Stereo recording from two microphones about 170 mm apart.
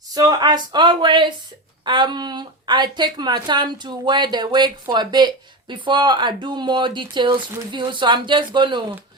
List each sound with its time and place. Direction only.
0.1 s speech: 20° right (ahead or behind)